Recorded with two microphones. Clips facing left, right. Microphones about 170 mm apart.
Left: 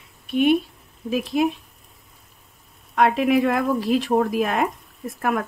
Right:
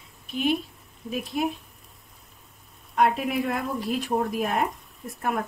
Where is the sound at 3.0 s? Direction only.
90° left.